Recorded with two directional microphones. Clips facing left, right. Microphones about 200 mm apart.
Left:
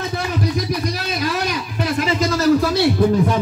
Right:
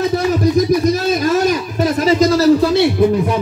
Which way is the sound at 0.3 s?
45° right (ahead or behind).